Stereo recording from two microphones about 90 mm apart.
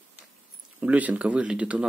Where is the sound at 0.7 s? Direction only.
15° right (ahead or behind).